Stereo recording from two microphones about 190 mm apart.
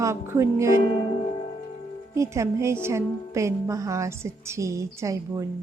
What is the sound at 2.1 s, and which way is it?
A woman's voice, 15° right (ahead or behind).